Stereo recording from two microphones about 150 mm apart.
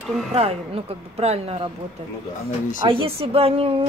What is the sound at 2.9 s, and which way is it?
Speech, 40° right (ahead or behind).